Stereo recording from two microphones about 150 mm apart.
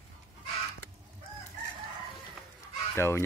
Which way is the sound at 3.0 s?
15° left (ahead or behind).